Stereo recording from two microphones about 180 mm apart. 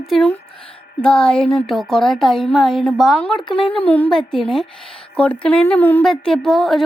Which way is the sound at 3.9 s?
5° left (ahead or behind).